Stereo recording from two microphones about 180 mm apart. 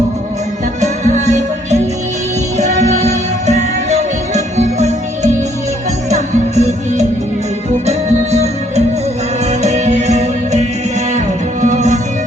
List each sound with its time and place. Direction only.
0.8 s music: 40° right (ahead or behind)